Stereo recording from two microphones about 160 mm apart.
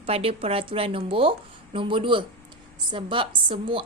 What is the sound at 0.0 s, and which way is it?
Speech, 35° right (ahead or behind).